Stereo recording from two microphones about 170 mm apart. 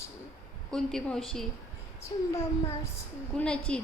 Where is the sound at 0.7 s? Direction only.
5° left (ahead or behind).